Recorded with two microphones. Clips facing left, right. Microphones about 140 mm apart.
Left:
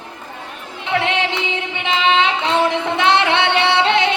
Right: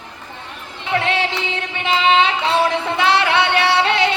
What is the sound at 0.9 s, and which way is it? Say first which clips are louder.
Singing: even; 20° left (ahead or behind).